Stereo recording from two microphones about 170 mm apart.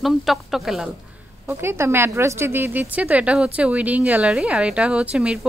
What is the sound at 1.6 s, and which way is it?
A woman's voice, 15° right (ahead or behind).